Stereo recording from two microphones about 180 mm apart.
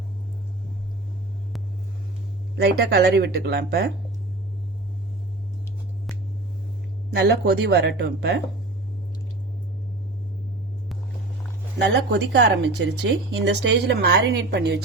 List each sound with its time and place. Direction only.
2.6 s speech: 65° right (ahead or behind)
7.1 s speech: 65° right (ahead or behind)
11.9 s speech: 75° right (ahead or behind)